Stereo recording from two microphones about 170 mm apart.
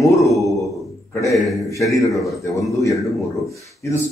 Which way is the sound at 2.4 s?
20° left (ahead or behind).